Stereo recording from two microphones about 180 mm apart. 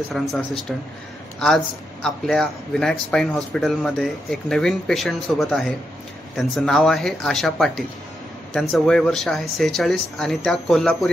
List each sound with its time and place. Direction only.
0.1 s speech: centre (ahead or behind)
2.0 s speech: centre (ahead or behind)